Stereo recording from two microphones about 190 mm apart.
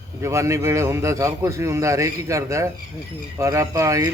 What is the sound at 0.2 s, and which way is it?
Speech, 15° right (ahead or behind).